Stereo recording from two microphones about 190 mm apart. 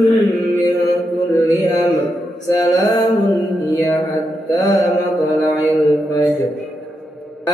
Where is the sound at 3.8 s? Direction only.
15° left (ahead or behind).